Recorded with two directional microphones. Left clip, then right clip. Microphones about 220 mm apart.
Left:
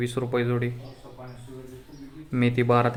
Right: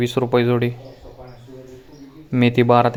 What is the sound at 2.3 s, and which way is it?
Speech, 20° right (ahead or behind).